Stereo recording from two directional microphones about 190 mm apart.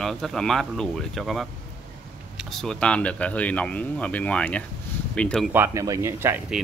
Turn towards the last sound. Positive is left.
turn(degrees=-10)  # may be behind; listen again after turning